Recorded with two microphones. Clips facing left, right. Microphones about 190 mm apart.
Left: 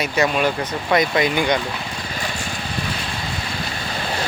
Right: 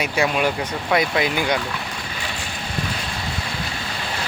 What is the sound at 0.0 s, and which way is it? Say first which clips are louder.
Speech: left 1 dB; 10° right (ahead or behind).